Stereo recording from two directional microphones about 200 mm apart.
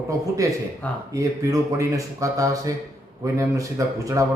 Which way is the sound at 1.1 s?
15° right (ahead or behind).